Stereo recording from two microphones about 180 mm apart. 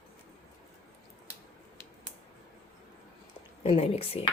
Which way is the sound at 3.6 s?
35° left (ahead or behind).